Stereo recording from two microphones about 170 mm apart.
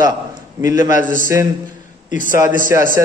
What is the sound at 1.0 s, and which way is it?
Speech, 50° right (ahead or behind).